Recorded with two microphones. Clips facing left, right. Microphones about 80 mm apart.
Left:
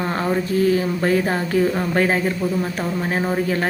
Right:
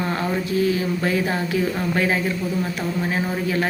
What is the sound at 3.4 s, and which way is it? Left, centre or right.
Speech, left.